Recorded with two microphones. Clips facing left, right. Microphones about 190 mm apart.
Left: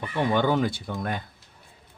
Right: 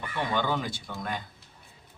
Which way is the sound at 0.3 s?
55° left (ahead or behind).